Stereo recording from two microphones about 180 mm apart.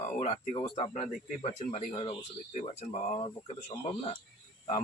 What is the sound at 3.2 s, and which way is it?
Speech, 25° left (ahead or behind).